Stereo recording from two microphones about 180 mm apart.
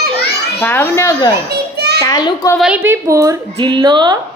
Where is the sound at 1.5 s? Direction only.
65° right (ahead or behind).